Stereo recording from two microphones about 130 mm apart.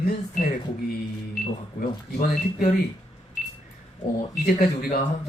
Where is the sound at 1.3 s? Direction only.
90° left.